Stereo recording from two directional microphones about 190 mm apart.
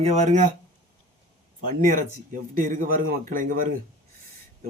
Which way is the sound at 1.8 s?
45° right (ahead or behind).